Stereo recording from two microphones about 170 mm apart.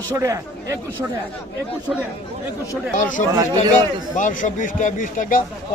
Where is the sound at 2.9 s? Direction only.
50° left (ahead or behind).